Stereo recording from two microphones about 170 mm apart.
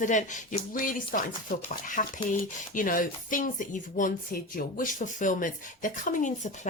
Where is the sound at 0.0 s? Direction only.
45° left (ahead or behind).